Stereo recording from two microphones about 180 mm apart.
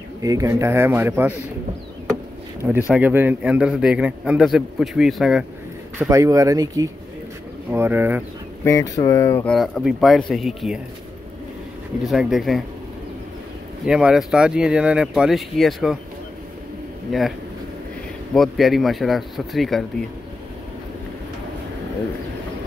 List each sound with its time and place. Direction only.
0.2 s a man's voice: 20° right (ahead or behind)
2.9 s a man's voice: 10° right (ahead or behind)
5.9 s a man's voice: 15° right (ahead or behind)
8.6 s speech: 20° left (ahead or behind)
9.5 s a man's voice: centre (ahead or behind)
12.1 s a man's voice: centre (ahead or behind)
13.8 s a man's voice: 5° right (ahead or behind)
17.1 s a man's voice: centre (ahead or behind)
18.3 s a man's voice: centre (ahead or behind)